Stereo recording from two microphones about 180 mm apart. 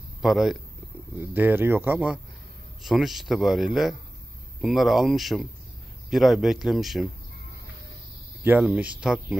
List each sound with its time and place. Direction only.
0.2 s speech: centre (ahead or behind)
8.4 s speech: 10° right (ahead or behind)